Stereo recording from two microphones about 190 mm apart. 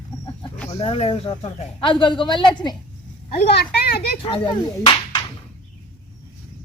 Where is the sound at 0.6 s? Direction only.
25° left (ahead or behind).